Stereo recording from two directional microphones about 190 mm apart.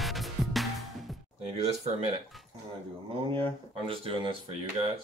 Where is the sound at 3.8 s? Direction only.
30° right (ahead or behind).